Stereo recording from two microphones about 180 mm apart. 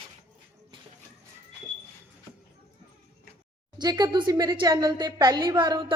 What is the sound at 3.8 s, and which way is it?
A woman's voice, 20° right (ahead or behind).